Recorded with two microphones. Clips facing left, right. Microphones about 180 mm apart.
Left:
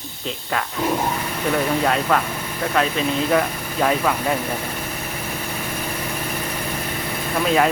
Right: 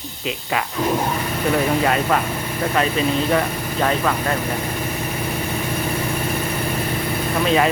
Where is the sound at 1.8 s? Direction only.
Centre (ahead or behind).